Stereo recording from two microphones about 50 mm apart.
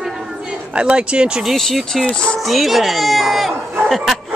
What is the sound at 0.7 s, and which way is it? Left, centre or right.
Speech, right.